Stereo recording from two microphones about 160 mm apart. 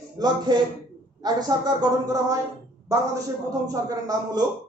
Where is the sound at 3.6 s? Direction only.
20° right (ahead or behind).